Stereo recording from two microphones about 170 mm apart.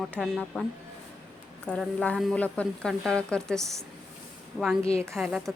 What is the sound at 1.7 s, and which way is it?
Speech, 5° left (ahead or behind).